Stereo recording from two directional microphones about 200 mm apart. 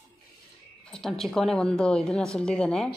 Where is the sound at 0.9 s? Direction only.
Centre (ahead or behind).